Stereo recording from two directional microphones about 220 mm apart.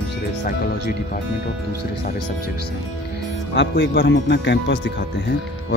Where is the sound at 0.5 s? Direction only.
40° left (ahead or behind).